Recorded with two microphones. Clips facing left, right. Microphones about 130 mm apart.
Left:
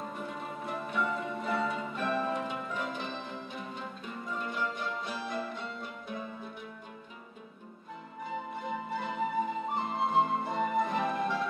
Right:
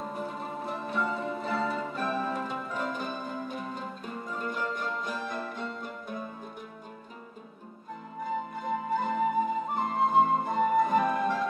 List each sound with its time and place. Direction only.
0.1 s music: 40° right (ahead or behind)
8.3 s music: 45° right (ahead or behind)